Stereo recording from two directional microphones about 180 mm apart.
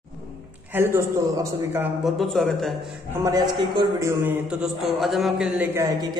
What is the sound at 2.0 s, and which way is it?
Speech, centre (ahead or behind).